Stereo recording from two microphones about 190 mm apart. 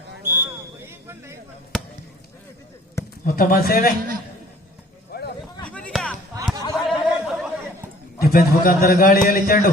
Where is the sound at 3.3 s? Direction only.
50° left (ahead or behind).